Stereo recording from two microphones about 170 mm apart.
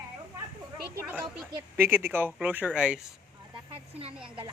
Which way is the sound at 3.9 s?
35° right (ahead or behind).